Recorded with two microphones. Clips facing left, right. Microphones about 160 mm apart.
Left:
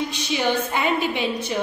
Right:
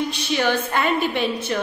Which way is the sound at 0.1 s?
15° left (ahead or behind).